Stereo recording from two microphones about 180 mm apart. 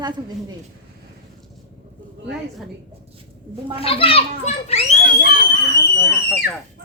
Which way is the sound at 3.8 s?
30° left (ahead or behind).